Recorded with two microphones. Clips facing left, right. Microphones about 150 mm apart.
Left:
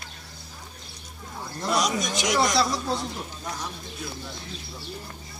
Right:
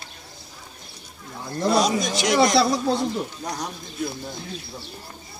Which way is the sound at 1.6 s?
30° right (ahead or behind).